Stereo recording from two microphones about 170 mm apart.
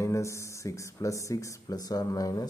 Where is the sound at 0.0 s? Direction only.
15° left (ahead or behind).